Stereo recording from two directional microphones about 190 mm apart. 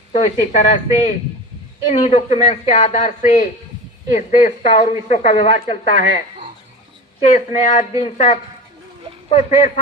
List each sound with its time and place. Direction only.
0.1 s speech: 40° left (ahead or behind)
7.3 s speech: 40° left (ahead or behind)